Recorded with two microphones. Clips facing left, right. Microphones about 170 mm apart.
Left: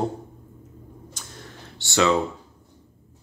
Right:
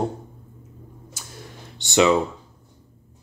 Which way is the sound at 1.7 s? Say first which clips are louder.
Right 3 dB; 20° right (ahead or behind).